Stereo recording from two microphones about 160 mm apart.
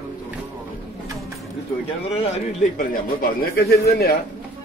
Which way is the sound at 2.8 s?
65° left (ahead or behind).